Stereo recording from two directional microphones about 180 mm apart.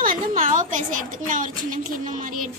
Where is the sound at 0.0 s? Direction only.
50° right (ahead or behind).